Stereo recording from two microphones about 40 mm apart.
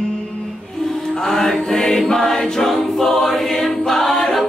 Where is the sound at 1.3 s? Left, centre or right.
Centre.